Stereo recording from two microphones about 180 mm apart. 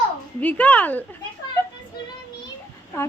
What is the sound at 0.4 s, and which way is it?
Speech, 5° left (ahead or behind).